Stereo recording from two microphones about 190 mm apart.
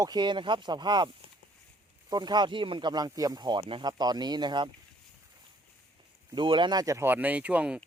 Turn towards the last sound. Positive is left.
turn(degrees=-5)  # may be behind; listen again after turning